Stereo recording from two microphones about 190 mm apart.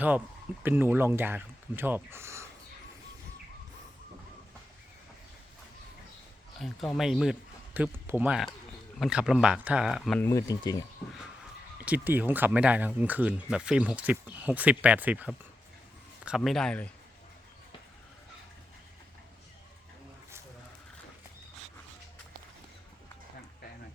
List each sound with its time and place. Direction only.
0.6 s speech: 10° right (ahead or behind)
6.6 s speech: centre (ahead or behind)
10.2 s speech: 15° left (ahead or behind)
11.9 s speech: 10° right (ahead or behind)